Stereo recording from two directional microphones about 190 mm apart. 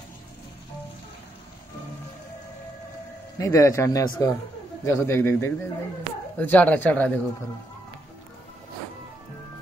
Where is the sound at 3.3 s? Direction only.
15° left (ahead or behind).